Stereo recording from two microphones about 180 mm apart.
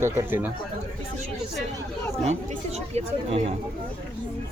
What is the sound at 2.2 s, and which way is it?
Speech, 40° right (ahead or behind).